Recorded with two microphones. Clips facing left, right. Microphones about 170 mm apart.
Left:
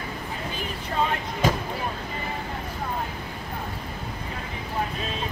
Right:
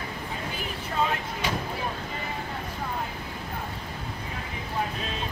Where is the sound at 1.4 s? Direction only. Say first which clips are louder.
Left 7 dB; 45° left (ahead or behind).